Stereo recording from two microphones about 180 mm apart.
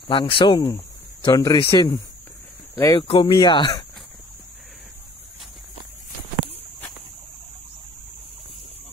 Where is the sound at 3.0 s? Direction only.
30° left (ahead or behind).